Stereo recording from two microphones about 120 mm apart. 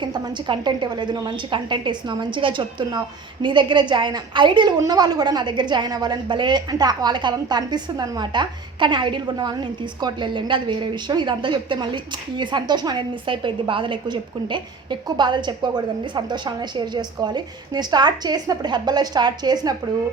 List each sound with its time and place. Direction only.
0.0 s a woman's voice: 40° right (ahead or behind)